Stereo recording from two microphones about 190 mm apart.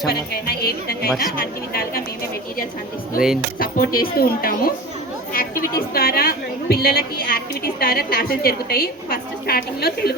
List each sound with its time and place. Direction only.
0.1 s a woman's voice: 55° left (ahead or behind)
3.6 s a woman's voice: 50° left (ahead or behind)